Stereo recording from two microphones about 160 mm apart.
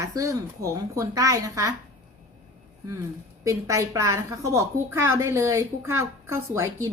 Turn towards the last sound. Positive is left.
turn(degrees=-15)  # may be behind; listen again after turning